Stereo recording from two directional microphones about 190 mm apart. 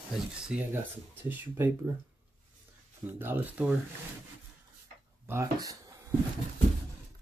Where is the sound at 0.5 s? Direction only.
5° right (ahead or behind).